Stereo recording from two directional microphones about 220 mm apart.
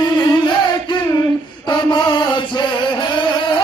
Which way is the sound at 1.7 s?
20° left (ahead or behind).